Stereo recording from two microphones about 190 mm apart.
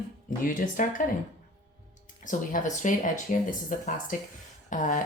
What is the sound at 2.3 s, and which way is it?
Speech, 40° left (ahead or behind).